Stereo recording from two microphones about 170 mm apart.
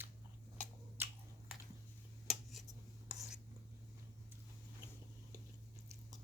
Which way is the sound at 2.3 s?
Centre (ahead or behind).